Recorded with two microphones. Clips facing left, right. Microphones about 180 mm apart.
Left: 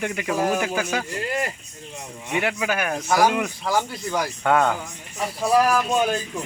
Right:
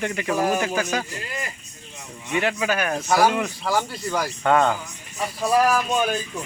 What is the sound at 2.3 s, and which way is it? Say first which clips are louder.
Speech: right 1 dB; 10° left (ahead or behind).